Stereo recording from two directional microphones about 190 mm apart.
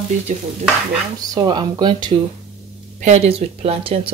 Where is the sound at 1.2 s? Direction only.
20° right (ahead or behind).